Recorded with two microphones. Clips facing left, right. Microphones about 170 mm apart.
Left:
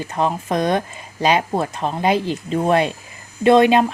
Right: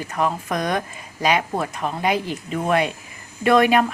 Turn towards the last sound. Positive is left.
turn(degrees=25)  # may be behind; listen again after turning